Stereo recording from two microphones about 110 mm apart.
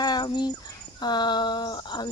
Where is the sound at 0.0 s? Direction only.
40° left (ahead or behind).